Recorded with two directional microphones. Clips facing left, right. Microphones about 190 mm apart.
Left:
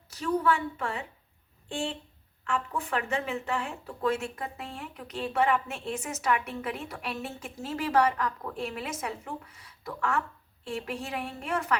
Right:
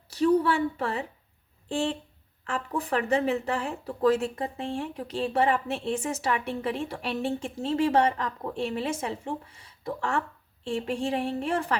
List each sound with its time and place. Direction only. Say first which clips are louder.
0.1 s speech: right 5 dB; 35° right (ahead or behind)
2.5 s speech: right 2 dB; 35° right (ahead or behind)